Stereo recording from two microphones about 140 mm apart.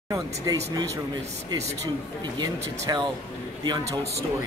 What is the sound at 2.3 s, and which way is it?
Speech, 30° right (ahead or behind).